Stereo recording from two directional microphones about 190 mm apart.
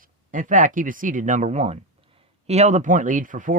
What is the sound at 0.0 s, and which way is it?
Speech, 45° right (ahead or behind).